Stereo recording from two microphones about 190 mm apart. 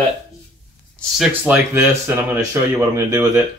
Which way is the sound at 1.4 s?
10° right (ahead or behind).